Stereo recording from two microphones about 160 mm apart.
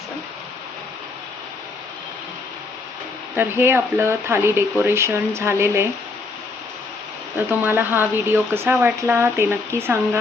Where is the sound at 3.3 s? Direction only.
15° right (ahead or behind).